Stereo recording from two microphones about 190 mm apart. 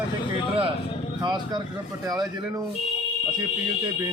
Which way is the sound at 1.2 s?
20° right (ahead or behind).